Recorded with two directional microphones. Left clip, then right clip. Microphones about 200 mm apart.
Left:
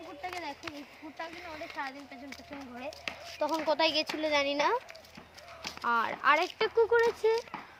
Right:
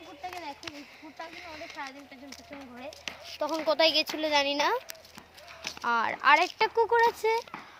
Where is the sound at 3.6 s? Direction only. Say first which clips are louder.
Right 5 dB; 35° right (ahead or behind).